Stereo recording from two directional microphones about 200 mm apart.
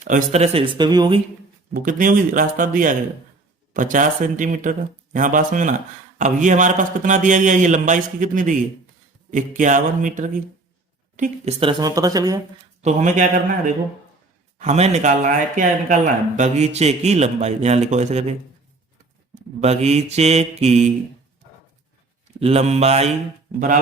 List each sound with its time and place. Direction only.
0.1 s a woman's voice: 35° right (ahead or behind)
1.7 s speech: 45° right (ahead or behind)
11.2 s a woman's voice: 30° right (ahead or behind)
12.8 s speech: 35° right (ahead or behind)
14.6 s speech: 35° right (ahead or behind)
19.5 s speech: 35° right (ahead or behind)
22.4 s speech: 30° right (ahead or behind)